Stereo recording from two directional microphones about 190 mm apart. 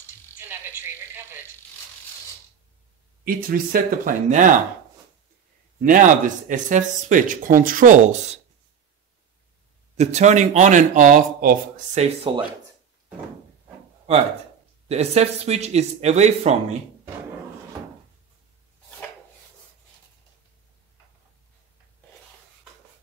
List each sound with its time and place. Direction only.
0.4 s speech: 10° right (ahead or behind)
3.3 s speech: 50° right (ahead or behind)
5.8 s speech: 45° right (ahead or behind)
9.9 s speech: 35° right (ahead or behind)
14.9 s speech: 35° right (ahead or behind)